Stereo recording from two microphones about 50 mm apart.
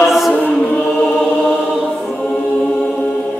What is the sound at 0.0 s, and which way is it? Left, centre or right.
Chant, centre.